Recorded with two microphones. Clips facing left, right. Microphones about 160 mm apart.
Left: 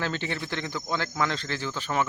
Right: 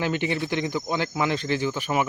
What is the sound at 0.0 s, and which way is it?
Speech, 15° right (ahead or behind).